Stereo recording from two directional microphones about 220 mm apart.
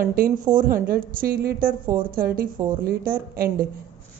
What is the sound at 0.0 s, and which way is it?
Speech, 40° right (ahead or behind).